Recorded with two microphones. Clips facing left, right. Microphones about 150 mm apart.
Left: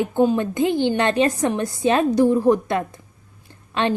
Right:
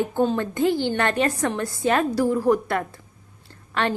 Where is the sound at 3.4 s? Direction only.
20° left (ahead or behind).